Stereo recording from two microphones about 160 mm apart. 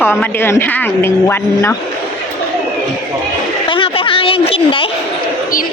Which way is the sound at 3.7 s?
30° left (ahead or behind).